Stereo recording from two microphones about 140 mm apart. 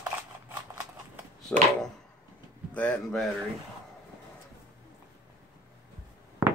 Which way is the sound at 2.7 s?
10° left (ahead or behind).